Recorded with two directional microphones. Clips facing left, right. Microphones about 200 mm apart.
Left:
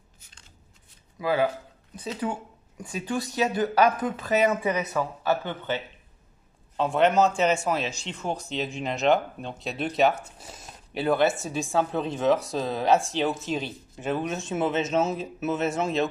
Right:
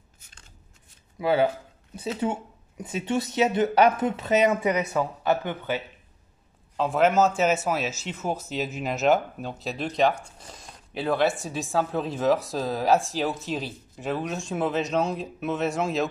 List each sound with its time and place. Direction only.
1.2 s speech: 25° right (ahead or behind); by 5.8 s 10° right (ahead or behind)
6.8 s speech: centre (ahead or behind)